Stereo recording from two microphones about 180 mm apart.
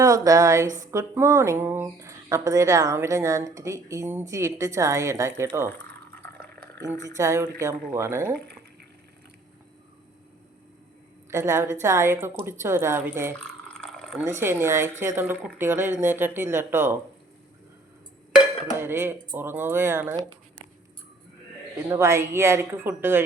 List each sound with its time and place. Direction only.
0.0 s speech: 20° right (ahead or behind)
7.2 s speech: 15° right (ahead or behind)
11.3 s speech: 15° right (ahead or behind)
13.4 s a sound: 5° left (ahead or behind)
14.3 s speech: 15° right (ahead or behind)
18.8 s speech: 10° right (ahead or behind)
21.8 s speech: 15° right (ahead or behind)